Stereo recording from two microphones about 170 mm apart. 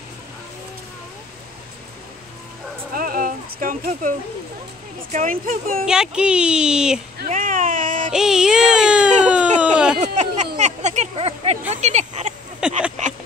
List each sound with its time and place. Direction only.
2.9 s a sound: 55° right (ahead or behind)
5.1 s speech: 50° right (ahead or behind)
5.9 s speech: 5° right (ahead or behind)
7.2 s baby cry: 50° right (ahead or behind)
8.1 s speech: 5° right (ahead or behind)
9.2 s a sound: 5° right (ahead or behind)
9.9 s a sound: 45° right (ahead or behind)
11.7 s speech: 40° right (ahead or behind)
12.6 s speech: 5° right (ahead or behind)